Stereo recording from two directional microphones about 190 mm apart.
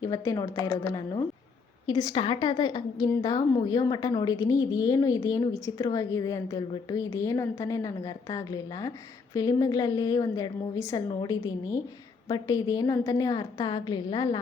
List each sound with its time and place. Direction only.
0.0 s a woman's voice: 15° left (ahead or behind)